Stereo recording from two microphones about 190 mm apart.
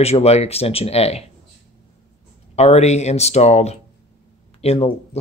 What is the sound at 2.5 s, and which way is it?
Speech, 35° left (ahead or behind).